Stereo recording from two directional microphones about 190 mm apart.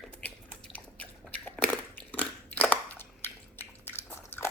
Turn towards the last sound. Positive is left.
turn(degrees=10)  # may be behind; listen again after turning